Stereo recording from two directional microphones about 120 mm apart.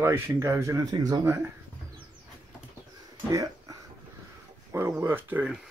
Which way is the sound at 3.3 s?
25° right (ahead or behind).